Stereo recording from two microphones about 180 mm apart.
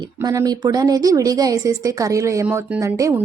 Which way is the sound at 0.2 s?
20° right (ahead or behind).